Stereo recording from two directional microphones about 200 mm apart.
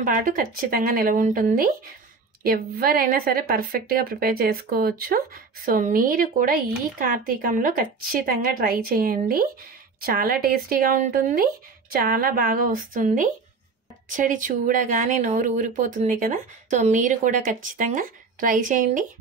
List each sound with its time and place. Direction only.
0.0 s a woman's voice: 40° right (ahead or behind)